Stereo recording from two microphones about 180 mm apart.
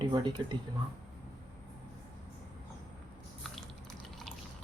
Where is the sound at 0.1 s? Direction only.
25° right (ahead or behind).